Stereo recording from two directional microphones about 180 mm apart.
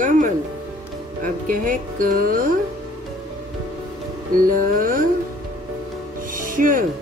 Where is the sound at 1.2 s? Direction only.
50° right (ahead or behind).